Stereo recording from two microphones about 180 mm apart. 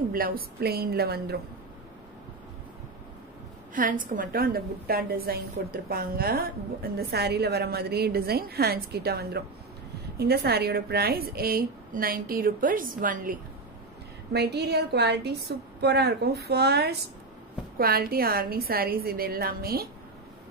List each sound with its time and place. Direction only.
0.1 s a woman's voice: 55° right (ahead or behind)
3.7 s a woman's voice: 50° right (ahead or behind)
14.3 s a woman's voice: 65° right (ahead or behind)